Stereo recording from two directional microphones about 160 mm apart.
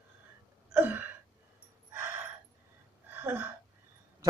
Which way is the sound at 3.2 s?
10° right (ahead or behind).